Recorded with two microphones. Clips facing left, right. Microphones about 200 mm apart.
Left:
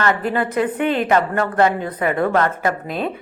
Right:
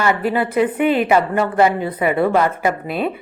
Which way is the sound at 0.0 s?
5° right (ahead or behind).